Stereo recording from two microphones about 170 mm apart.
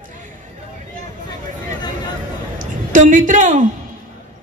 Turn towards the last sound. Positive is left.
turn(degrees=-45)  # may be behind; listen again after turning